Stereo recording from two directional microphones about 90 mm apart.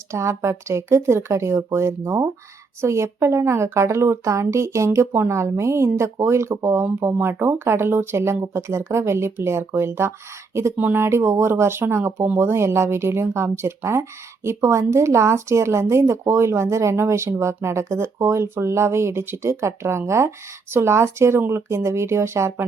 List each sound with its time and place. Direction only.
0.1 s speech: 30° right (ahead or behind)